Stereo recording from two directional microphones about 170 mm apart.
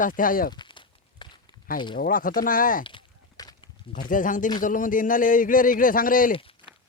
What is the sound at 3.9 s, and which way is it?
A man's voice, 50° left (ahead or behind).